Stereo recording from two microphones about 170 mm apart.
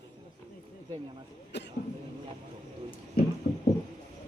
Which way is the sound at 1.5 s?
90° left.